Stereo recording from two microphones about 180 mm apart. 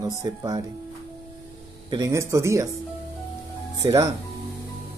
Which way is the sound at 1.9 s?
20° right (ahead or behind).